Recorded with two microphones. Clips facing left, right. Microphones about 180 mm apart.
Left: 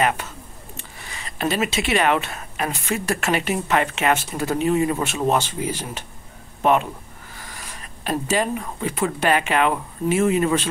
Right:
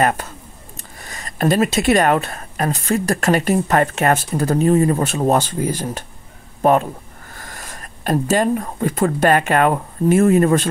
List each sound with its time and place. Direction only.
0.0 s speech: 45° right (ahead or behind)